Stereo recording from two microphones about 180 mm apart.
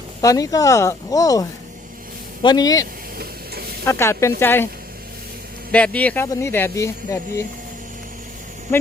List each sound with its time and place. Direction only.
0.2 s speech: 20° left (ahead or behind)
3.2 s stir: 60° right (ahead or behind)
3.8 s speech: 15° left (ahead or behind)
5.7 s speech: 5° left (ahead or behind)